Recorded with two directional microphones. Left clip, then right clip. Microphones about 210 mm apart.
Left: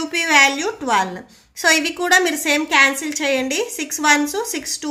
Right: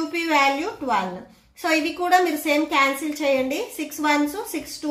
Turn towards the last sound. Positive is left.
turn(degrees=40)  # may be behind; listen again after turning